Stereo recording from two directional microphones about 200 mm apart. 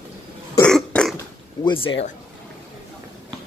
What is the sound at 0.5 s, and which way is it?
Burping, 5° left (ahead or behind).